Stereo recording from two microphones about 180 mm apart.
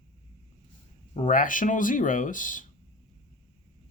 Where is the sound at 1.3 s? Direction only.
50° left (ahead or behind).